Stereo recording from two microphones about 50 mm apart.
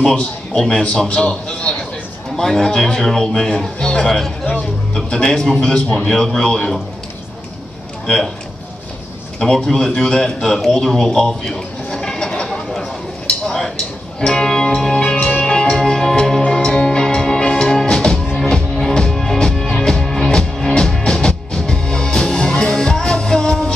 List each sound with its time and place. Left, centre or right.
0.0 s a man's voice: centre
9.4 s a man's voice: centre
11.1 s a sound: centre
14.2 s music: centre
15.8 s music: centre